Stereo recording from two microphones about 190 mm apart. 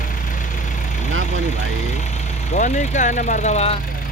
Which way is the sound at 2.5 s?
40° left (ahead or behind).